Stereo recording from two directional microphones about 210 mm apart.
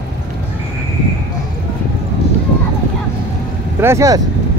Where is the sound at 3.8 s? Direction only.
15° right (ahead or behind).